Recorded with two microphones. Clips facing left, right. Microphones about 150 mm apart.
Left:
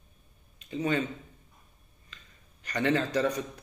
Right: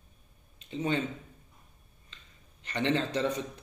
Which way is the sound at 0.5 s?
25° right (ahead or behind).